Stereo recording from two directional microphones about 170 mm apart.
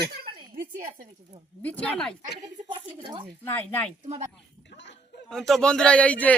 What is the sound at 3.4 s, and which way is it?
Speech, 10° left (ahead or behind).